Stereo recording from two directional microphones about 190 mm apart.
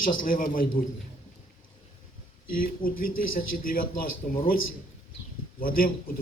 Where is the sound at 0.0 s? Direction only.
45° left (ahead or behind).